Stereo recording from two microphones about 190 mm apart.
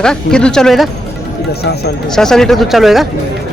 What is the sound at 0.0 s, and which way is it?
Speech, 5° left (ahead or behind).